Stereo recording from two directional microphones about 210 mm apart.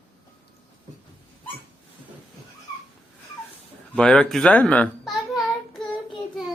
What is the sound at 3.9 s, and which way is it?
Speech, 5° left (ahead or behind).